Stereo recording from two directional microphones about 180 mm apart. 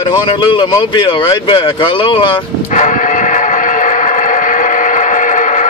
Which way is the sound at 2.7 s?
45° left (ahead or behind).